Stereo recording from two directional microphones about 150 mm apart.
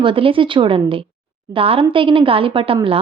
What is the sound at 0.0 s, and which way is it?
Speech, 35° right (ahead or behind).